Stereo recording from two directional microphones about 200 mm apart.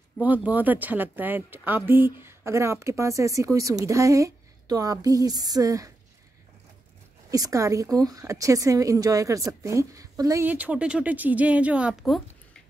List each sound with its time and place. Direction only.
0.2 s a woman's voice: 10° right (ahead or behind)
7.2 s a woman's voice: 15° right (ahead or behind); by 12.6 s centre (ahead or behind)